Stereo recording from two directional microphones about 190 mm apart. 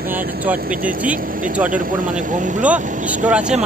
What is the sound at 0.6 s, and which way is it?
Speech, 50° right (ahead or behind).